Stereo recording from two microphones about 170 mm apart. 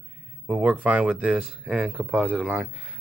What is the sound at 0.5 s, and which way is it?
Speech, 5° right (ahead or behind).